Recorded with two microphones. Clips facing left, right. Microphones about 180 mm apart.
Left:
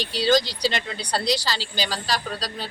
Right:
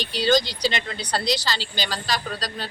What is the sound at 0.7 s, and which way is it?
A woman's voice, 10° left (ahead or behind).